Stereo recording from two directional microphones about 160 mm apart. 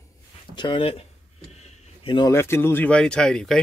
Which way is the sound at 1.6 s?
30° left (ahead or behind).